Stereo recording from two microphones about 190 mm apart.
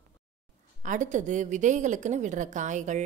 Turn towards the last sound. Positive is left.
turn(degrees=-40)  # may be behind; listen again after turning